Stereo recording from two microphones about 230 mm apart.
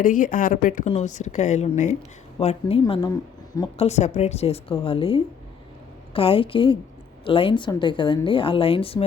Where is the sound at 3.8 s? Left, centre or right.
Left.